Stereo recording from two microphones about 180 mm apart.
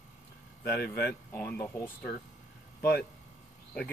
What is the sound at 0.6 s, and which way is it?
Speech, 65° left (ahead or behind).